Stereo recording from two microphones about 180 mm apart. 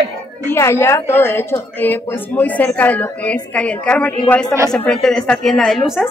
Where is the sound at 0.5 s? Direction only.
15° left (ahead or behind).